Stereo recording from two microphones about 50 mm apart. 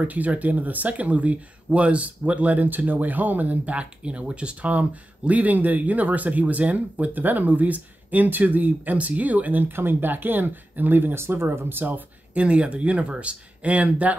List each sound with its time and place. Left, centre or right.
0.1 s speech: right
11.1 s speech: right
12.4 s speech: right